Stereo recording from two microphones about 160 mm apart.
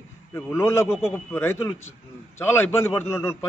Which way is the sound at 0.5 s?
15° left (ahead or behind).